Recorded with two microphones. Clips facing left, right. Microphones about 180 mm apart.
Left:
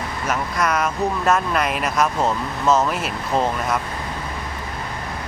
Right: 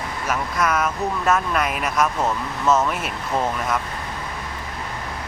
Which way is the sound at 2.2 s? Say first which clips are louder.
Left 1 dB; 30° left (ahead or behind).